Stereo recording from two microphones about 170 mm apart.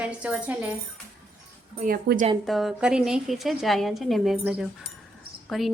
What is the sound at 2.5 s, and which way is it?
A woman's voice, centre (ahead or behind).